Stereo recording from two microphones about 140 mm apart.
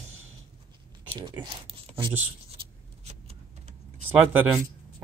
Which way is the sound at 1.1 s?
35° right (ahead or behind).